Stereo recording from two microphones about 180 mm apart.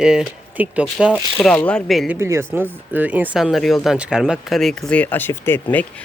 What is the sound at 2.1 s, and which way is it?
Speech, 15° right (ahead or behind).